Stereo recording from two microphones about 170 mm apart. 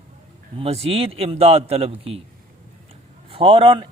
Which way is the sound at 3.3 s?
30° right (ahead or behind).